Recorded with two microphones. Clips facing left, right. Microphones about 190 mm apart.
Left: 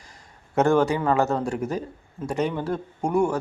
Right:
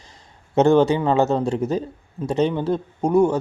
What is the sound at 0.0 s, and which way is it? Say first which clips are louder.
A man's voice: right 1 dB; 25° right (ahead or behind).